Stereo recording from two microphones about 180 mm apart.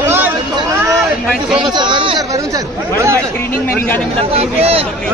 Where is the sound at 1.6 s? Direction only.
25° right (ahead or behind).